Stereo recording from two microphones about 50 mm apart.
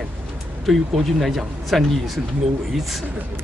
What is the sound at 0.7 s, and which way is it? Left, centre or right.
Speech, centre.